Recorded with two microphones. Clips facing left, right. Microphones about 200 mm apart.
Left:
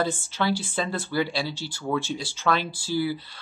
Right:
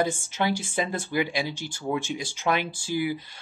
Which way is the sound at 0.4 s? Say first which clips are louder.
Even; 20° right (ahead or behind).